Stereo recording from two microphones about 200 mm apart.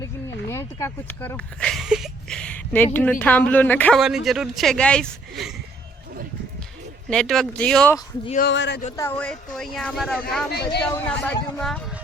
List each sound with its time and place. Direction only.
0.4 s speech: 15° left (ahead or behind)
4.0 s speech: centre (ahead or behind)
7.1 s speech: centre (ahead or behind)
8.4 s speech: 60° left (ahead or behind)
9.0 s speech: 10° left (ahead or behind)
10.5 s speech: 55° left (ahead or behind)
10.8 s speech: 5° left (ahead or behind)